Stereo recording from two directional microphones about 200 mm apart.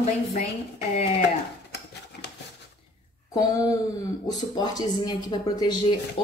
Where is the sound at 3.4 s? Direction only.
20° left (ahead or behind).